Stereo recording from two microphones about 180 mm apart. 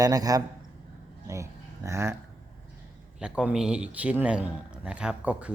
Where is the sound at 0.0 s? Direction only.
20° right (ahead or behind).